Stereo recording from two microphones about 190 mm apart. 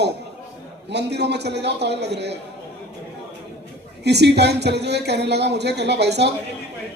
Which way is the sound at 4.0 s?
60° right (ahead or behind).